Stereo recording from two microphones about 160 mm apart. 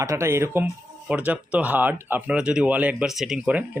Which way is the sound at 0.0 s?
15° right (ahead or behind).